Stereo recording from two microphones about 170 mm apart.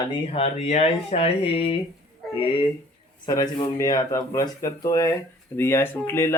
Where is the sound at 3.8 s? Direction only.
20° left (ahead or behind).